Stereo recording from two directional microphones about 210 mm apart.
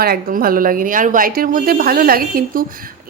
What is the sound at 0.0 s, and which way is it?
Speech, 45° right (ahead or behind).